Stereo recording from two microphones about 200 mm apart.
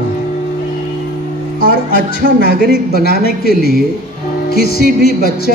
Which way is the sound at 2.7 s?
50° left (ahead or behind).